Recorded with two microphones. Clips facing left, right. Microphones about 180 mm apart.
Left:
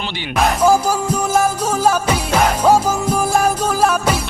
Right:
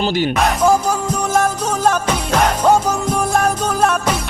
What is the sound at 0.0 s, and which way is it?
Speech, 45° right (ahead or behind).